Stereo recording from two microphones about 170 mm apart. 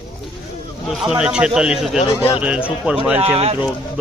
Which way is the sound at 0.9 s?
5° right (ahead or behind).